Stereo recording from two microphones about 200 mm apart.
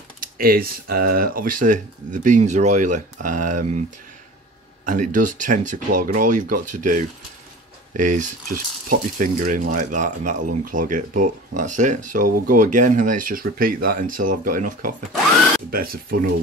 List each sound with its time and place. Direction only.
0.2 s speech: 50° right (ahead or behind)
4.8 s speech: 40° right (ahead or behind)